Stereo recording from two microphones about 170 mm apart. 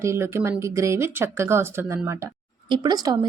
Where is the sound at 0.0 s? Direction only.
15° right (ahead or behind).